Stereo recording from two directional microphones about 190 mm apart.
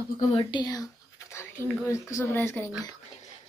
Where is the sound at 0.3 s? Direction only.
25° left (ahead or behind).